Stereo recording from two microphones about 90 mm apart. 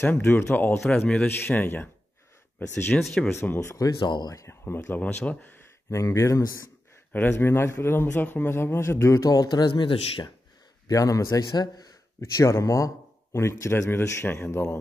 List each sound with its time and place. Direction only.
0.0 s a man's voice: 25° left (ahead or behind)
3.7 s speech: 45° left (ahead or behind)
4.5 s speech: 25° left (ahead or behind)
5.9 s speech: 30° left (ahead or behind)
7.1 s speech: 25° left (ahead or behind); by 10.2 s 70° left (ahead or behind)
10.9 s speech: 40° left (ahead or behind)
12.2 s speech: 35° left (ahead or behind)